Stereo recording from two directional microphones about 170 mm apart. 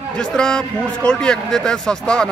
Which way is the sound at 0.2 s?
5° left (ahead or behind).